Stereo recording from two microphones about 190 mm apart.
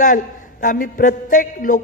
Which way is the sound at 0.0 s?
45° left (ahead or behind).